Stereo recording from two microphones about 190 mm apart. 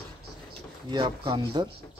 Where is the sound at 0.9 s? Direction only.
25° right (ahead or behind).